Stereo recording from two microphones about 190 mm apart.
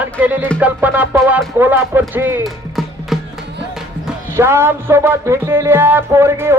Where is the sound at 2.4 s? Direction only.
Centre (ahead or behind).